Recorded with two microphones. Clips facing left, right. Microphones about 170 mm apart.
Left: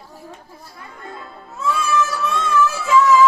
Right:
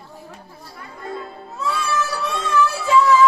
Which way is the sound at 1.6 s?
35° right (ahead or behind).